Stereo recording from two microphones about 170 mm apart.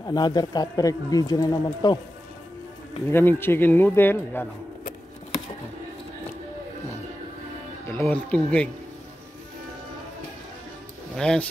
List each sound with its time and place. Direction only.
0.0 s speech: 25° left (ahead or behind)
3.1 s a man's voice: 15° left (ahead or behind)
7.9 s a man's voice: 10° left (ahead or behind)
11.1 s speech: 5° left (ahead or behind)